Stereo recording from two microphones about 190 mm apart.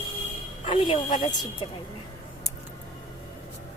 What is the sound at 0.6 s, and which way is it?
Speech, 25° left (ahead or behind).